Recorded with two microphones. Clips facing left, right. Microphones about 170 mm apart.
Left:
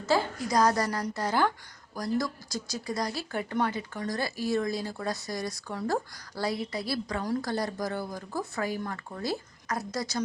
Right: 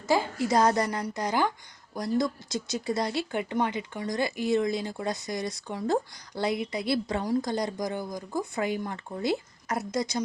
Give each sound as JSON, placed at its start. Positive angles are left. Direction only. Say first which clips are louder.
{"t": 0.3, "sound": "speech", "louder": "right 2 dB", "side_deg": -25}
{"t": 3.5, "sound": "speech", "louder": "left 1 dB", "side_deg": -15}